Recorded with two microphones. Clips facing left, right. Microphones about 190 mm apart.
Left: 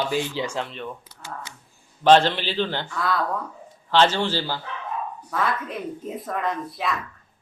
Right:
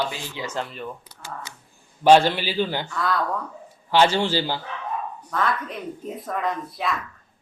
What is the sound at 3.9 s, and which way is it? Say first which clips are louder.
Speech: right 1 dB; 10° right (ahead or behind).